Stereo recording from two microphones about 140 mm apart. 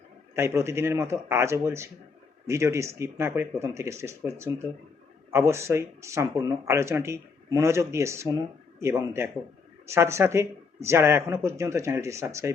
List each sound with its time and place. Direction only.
0.3 s speech: 20° right (ahead or behind)